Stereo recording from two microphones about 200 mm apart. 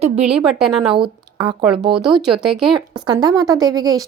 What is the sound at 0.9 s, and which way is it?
Speech, 25° right (ahead or behind).